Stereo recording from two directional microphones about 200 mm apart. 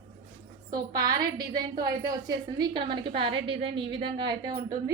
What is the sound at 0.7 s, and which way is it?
A woman's voice, 20° right (ahead or behind).